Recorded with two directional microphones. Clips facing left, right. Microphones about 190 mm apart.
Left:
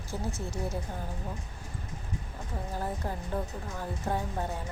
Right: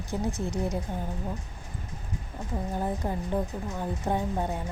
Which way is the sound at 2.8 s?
20° right (ahead or behind).